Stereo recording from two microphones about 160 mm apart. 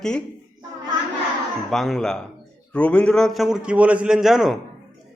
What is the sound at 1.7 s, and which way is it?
A man's voice, centre (ahead or behind).